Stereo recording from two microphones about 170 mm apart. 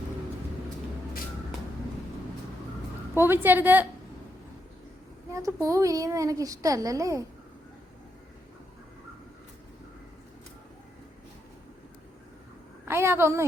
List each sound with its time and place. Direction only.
3.2 s a woman's voice: 15° right (ahead or behind)
5.3 s speech: 20° right (ahead or behind)
12.9 s a woman's voice: 15° right (ahead or behind)